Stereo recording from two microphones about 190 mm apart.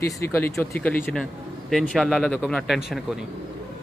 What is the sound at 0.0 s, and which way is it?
Speech, 15° left (ahead or behind).